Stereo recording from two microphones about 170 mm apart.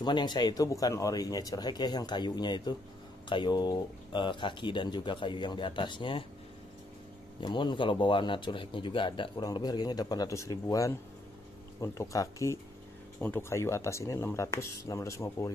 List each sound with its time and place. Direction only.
0.0 s speech: 25° left (ahead or behind)
7.3 s speech: 25° left (ahead or behind)